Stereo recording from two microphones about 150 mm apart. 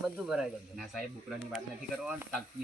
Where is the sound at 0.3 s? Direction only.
Centre (ahead or behind).